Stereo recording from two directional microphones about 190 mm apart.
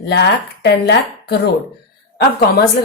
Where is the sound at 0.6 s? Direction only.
60° left (ahead or behind).